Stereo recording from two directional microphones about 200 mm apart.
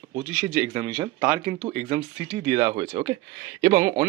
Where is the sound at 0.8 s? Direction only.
25° right (ahead or behind).